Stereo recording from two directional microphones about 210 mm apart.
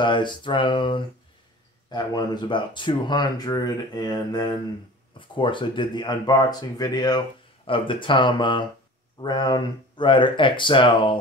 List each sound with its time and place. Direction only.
0.0 s speech: 20° left (ahead or behind)